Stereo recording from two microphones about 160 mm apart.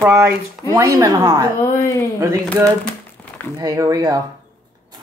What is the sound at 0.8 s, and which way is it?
Speech, 20° right (ahead or behind).